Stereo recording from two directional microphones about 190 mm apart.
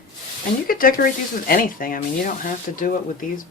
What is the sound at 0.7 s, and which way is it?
Speech, 50° left (ahead or behind).